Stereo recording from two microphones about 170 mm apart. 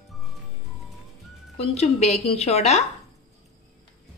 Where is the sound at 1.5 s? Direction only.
40° left (ahead or behind).